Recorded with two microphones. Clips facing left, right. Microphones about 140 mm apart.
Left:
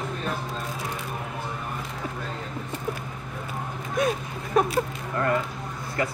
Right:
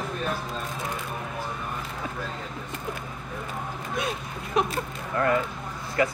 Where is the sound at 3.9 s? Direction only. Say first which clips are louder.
Left 7 dB; 50° left (ahead or behind).